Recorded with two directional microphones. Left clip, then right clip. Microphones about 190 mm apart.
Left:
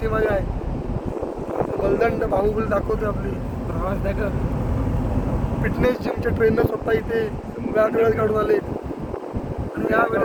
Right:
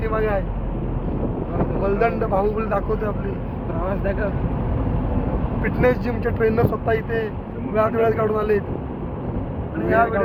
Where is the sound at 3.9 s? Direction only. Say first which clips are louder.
Right 2 dB; 20° left (ahead or behind).